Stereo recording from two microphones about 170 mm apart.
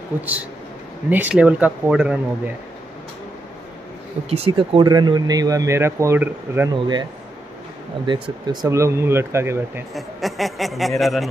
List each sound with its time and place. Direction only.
0.2 s speech: 10° right (ahead or behind)
4.3 s speech: 35° right (ahead or behind); by 6.7 s 10° right (ahead or behind)
6.7 s speech: 25° right (ahead or behind)
8.1 s speech: 25° right (ahead or behind)
9.9 s speech: centre (ahead or behind)